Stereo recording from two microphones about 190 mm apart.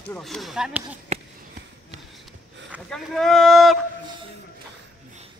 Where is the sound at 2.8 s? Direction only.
Centre (ahead or behind).